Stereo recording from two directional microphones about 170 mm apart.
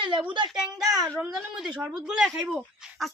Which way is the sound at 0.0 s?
30° right (ahead or behind).